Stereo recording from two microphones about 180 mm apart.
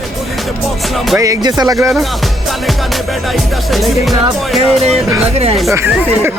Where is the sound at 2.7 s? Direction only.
Centre (ahead or behind).